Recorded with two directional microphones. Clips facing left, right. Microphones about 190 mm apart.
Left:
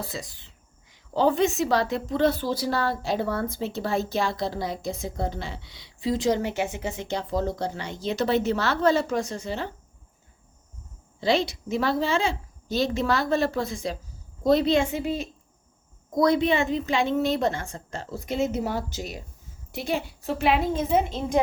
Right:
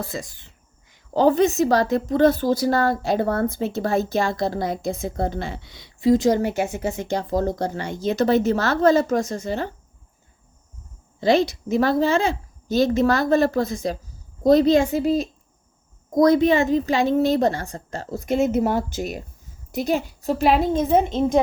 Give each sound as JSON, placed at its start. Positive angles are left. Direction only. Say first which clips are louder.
{"t": 0.0, "sound": "a woman's voice", "louder": "right 4 dB", "side_deg": -45}
{"t": 11.2, "sound": "a woman's voice", "louder": "right 5 dB", "side_deg": -45}
{"t": 19.7, "sound": "a woman's voice", "louder": "right 6 dB", "side_deg": -40}